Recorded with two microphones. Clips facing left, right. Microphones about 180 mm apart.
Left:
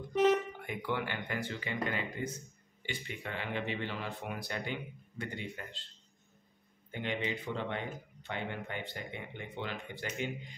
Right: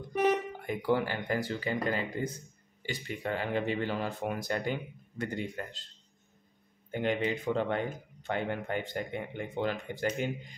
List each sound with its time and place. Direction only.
0.1 s music: 10° right (ahead or behind)
0.7 s speech: 35° right (ahead or behind)
6.9 s speech: 45° right (ahead or behind)